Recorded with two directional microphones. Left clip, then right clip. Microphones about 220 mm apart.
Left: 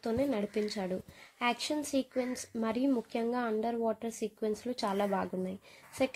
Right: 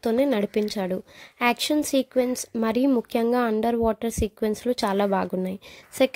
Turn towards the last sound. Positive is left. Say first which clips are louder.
# right 11 dB
turn(degrees=-35)  # may be behind; listen again after turning